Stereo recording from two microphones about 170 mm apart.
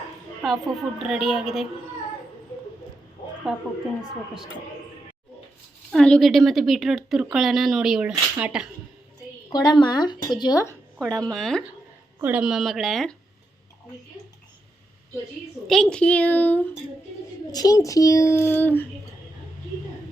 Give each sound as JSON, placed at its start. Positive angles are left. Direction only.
{"t": 0.4, "sound": "a woman's voice", "side_deg": 0}
{"t": 3.5, "sound": "a woman's voice", "side_deg": 0}
{"t": 5.9, "sound": "a woman's voice", "side_deg": 5}
{"t": 9.5, "sound": "speech", "side_deg": 25}
{"t": 11.3, "sound": "a woman's voice", "side_deg": 0}
{"t": 15.6, "sound": "a woman's voice", "side_deg": 0}
{"t": 17.5, "sound": "speech", "side_deg": 20}